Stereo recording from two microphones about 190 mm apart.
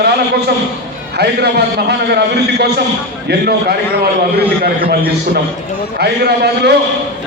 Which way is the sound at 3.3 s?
60° right (ahead or behind).